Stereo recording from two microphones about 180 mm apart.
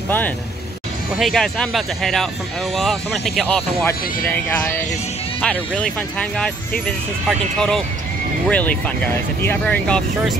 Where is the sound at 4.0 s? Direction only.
55° left (ahead or behind).